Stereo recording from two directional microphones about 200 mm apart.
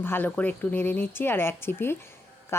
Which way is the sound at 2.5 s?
15° left (ahead or behind).